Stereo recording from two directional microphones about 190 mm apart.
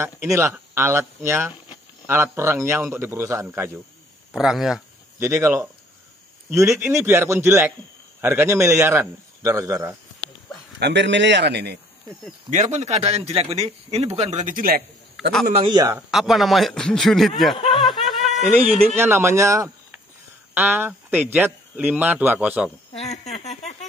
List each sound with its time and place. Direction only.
0.0 s speech: 15° right (ahead or behind)
4.3 s speech: centre (ahead or behind)
5.2 s speech: 15° right (ahead or behind)
10.8 s a man's voice: 65° right (ahead or behind)
12.4 s a man's voice: 40° right (ahead or behind)
15.6 s speech: 20° right (ahead or behind)
16.1 s speech: centre (ahead or behind)
17.7 s snicker: centre (ahead or behind)
18.9 s speech: 10° right (ahead or behind)
22.9 s speech: 35° left (ahead or behind)